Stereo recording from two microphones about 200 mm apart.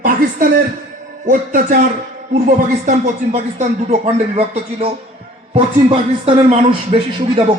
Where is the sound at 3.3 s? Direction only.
35° right (ahead or behind).